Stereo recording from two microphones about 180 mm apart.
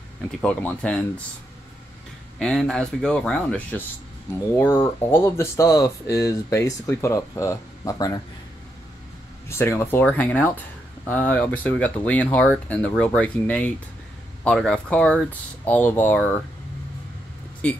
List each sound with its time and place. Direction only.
0.4 s speech: 5° left (ahead or behind)
2.3 s speech: centre (ahead or behind); by 8.2 s 20° left (ahead or behind)
9.5 s speech: 15° left (ahead or behind)